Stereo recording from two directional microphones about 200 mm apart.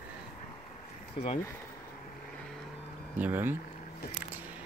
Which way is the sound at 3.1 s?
10° right (ahead or behind).